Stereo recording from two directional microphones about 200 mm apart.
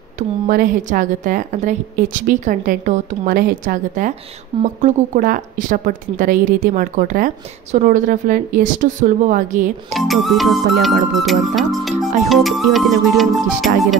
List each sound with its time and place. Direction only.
0.5 s a woman's voice: 45° right (ahead or behind)
4.5 s speech: 20° right (ahead or behind)
4.8 s a woman's voice: 40° right (ahead or behind)
9.9 s music: centre (ahead or behind)